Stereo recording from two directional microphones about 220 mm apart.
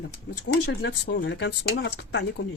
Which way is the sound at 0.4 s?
50° left (ahead or behind).